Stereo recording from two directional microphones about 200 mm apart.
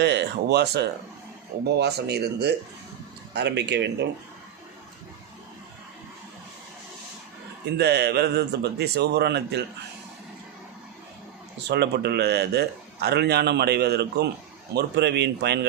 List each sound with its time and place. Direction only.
0.0 s a man's voice: 55° right (ahead or behind)
7.8 s a man's voice: 55° right (ahead or behind)
11.7 s a man's voice: 55° right (ahead or behind)